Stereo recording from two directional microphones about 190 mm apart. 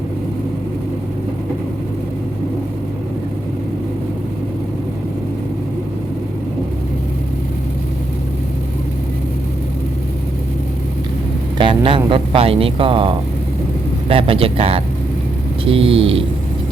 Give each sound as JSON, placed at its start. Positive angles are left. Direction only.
{"t": 11.5, "sound": "speech", "side_deg": -25}